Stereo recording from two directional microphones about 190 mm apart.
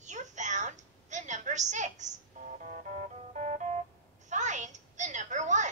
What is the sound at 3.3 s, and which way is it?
Music, 40° right (ahead or behind).